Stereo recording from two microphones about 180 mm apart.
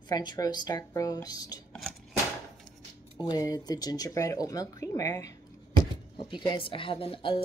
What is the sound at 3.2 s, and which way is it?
Speech, 20° left (ahead or behind).